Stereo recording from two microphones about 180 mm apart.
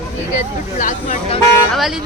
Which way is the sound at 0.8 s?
45° left (ahead or behind).